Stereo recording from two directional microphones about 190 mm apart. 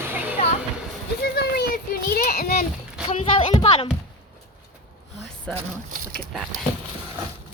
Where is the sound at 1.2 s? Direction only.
60° left (ahead or behind).